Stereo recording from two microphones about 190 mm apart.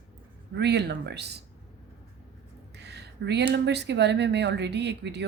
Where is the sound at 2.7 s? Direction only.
60° right (ahead or behind).